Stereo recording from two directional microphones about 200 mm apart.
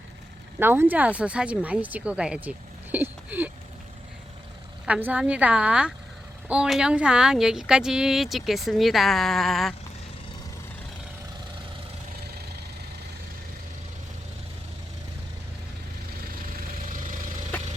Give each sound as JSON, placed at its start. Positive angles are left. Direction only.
{"t": 0.6, "sound": "speech", "side_deg": -10}
{"t": 4.9, "sound": "speech", "side_deg": -10}
{"t": 16.9, "sound": "vehicle", "side_deg": -40}